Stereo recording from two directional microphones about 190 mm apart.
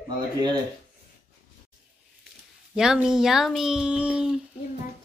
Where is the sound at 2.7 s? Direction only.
5° right (ahead or behind).